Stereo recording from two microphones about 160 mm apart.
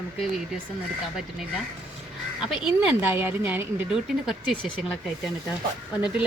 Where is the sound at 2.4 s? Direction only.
5° right (ahead or behind).